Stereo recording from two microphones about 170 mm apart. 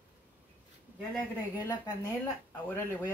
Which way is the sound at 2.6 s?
10° left (ahead or behind).